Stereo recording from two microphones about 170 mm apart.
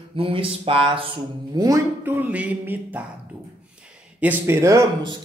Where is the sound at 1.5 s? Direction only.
20° right (ahead or behind).